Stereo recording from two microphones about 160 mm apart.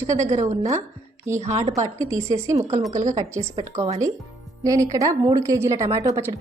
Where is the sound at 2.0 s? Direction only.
20° right (ahead or behind).